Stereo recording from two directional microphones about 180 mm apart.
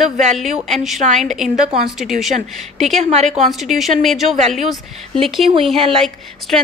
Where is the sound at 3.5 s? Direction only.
Centre (ahead or behind).